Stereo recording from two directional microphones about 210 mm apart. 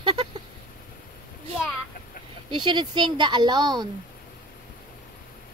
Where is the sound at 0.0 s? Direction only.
25° right (ahead or behind).